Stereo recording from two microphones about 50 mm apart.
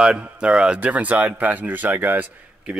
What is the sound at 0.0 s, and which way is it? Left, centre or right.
Speech, centre.